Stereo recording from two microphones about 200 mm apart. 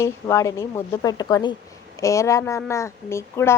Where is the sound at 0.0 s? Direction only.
15° left (ahead or behind).